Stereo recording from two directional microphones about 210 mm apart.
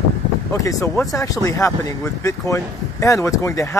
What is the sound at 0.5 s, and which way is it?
Speech, 15° left (ahead or behind).